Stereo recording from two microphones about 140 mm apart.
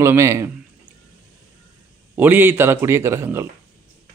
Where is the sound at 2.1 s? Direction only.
15° right (ahead or behind).